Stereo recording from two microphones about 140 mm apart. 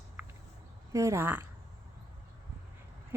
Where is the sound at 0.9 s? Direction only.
20° right (ahead or behind).